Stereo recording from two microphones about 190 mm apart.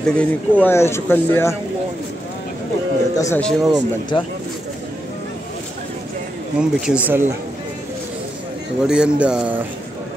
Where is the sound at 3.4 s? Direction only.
5° left (ahead or behind).